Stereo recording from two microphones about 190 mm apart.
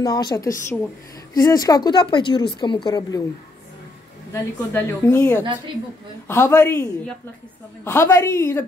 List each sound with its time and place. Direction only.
0.0 s speech: 20° left (ahead or behind)
4.3 s a woman's voice: 15° left (ahead or behind)